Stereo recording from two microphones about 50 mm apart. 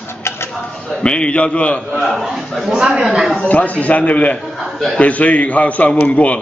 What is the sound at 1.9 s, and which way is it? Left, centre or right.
Speech, centre.